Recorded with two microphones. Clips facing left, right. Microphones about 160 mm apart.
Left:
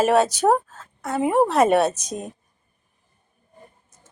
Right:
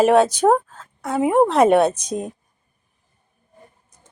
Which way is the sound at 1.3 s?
10° left (ahead or behind).